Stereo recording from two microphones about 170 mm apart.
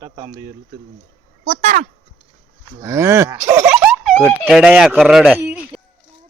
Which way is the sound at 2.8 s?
15° right (ahead or behind).